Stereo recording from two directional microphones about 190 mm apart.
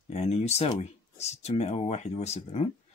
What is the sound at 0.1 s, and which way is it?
Speech, 35° left (ahead or behind).